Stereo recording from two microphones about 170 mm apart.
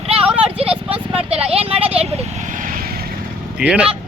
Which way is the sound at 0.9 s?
35° right (ahead or behind).